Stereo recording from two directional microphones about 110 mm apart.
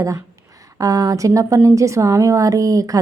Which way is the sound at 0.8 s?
35° right (ahead or behind).